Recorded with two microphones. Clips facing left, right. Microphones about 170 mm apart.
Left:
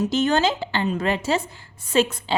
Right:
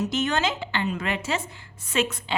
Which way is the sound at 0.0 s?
30° left (ahead or behind).